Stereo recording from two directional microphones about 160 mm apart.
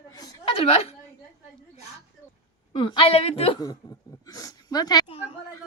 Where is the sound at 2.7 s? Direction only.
30° left (ahead or behind).